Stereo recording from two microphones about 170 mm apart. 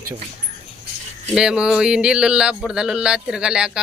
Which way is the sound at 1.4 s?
5° right (ahead or behind).